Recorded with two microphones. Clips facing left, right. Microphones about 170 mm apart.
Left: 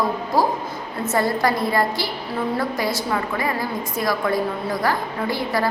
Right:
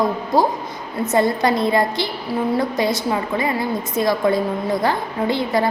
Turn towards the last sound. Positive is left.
turn(degrees=-20)  # may be behind; listen again after turning